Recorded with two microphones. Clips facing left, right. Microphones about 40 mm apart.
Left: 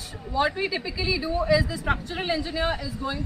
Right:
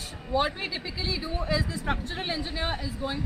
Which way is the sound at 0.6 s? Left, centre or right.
Centre.